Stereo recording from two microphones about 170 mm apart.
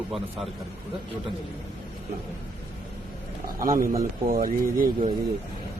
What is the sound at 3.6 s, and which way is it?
Speech, 55° right (ahead or behind).